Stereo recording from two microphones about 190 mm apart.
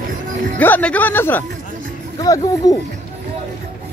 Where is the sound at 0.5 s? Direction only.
10° left (ahead or behind).